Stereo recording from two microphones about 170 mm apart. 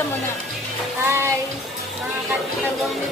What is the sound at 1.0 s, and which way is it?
Speech, 15° right (ahead or behind).